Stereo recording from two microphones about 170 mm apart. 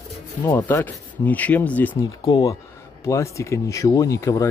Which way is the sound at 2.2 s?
25° left (ahead or behind).